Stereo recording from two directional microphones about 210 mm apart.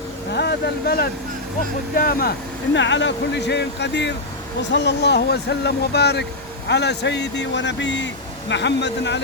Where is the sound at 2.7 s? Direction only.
60° left (ahead or behind).